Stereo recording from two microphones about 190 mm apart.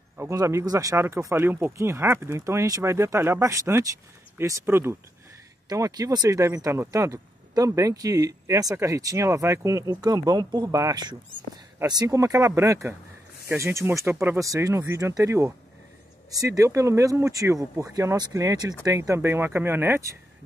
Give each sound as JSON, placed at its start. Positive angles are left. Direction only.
{"t": 0.2, "sound": "speech", "side_deg": -15}